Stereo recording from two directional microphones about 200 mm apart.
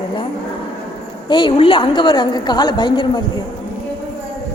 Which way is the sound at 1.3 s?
25° left (ahead or behind).